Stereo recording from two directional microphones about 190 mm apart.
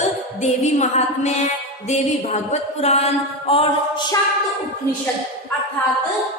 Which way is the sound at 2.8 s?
35° left (ahead or behind).